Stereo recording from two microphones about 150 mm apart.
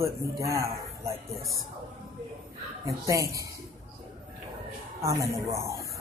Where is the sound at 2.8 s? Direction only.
20° right (ahead or behind).